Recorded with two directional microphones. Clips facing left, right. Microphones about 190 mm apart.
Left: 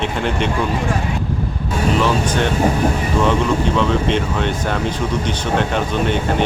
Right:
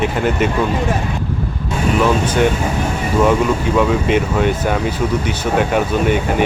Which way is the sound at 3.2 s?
10° right (ahead or behind).